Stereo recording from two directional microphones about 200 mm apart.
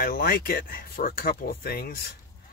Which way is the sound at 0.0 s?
50° left (ahead or behind).